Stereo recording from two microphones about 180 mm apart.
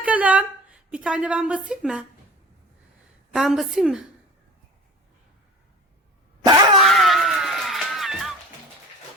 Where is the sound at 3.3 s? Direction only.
Centre (ahead or behind).